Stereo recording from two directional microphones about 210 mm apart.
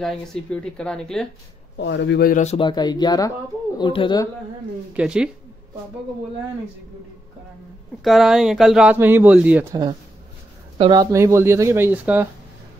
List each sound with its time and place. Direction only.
0.0 s speech: 5° left (ahead or behind)
1.8 s speech: 55° left (ahead or behind); by 4.3 s 20° left (ahead or behind)
4.9 s speech: 5° right (ahead or behind)
8.0 s speech: centre (ahead or behind)
10.8 s speech: 20° right (ahead or behind)